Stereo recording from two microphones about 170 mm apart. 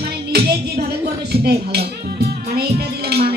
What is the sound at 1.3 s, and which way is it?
Speech, 70° right (ahead or behind).